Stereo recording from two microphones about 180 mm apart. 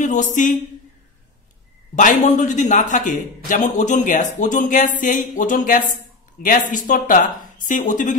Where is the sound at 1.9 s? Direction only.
45° left (ahead or behind).